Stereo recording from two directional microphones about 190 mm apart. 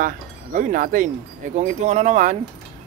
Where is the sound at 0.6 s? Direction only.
45° right (ahead or behind).